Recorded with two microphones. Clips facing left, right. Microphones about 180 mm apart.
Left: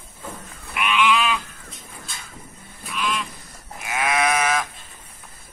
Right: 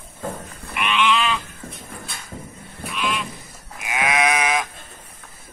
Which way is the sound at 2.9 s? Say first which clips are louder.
Even; 5° right (ahead or behind).